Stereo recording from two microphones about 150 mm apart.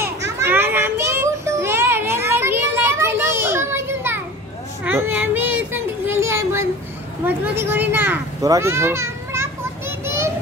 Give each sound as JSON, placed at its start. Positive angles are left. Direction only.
{"t": 0.0, "sound": "children playing", "side_deg": -15}
{"t": 4.8, "sound": "a sound", "side_deg": -15}
{"t": 7.2, "sound": "children playing", "side_deg": -15}